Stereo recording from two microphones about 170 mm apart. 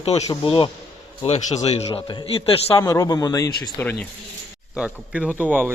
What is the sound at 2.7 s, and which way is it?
Speech, 15° left (ahead or behind).